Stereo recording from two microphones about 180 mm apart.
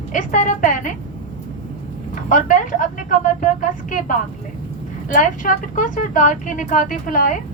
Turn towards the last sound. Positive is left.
turn(degrees=50)  # may be behind; listen again after turning